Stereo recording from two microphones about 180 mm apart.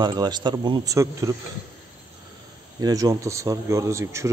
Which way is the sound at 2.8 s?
20° right (ahead or behind).